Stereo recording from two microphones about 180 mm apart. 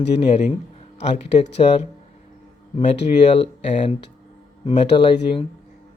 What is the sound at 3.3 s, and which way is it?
Speech, 35° left (ahead or behind).